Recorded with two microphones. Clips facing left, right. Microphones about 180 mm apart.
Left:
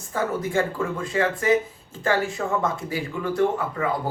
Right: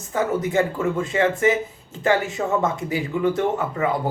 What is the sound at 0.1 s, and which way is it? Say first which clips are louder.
Speech: right 3 dB; 20° right (ahead or behind).